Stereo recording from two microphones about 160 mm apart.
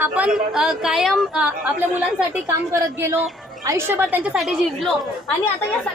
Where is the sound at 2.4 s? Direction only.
15° right (ahead or behind); by 5.0 s centre (ahead or behind).